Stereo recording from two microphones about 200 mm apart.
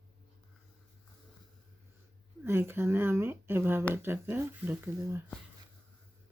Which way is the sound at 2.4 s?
10° right (ahead or behind).